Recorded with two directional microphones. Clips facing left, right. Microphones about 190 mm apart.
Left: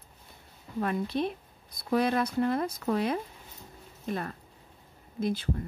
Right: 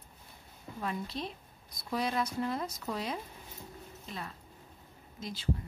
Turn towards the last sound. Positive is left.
turn(degrees=55)  # may be behind; listen again after turning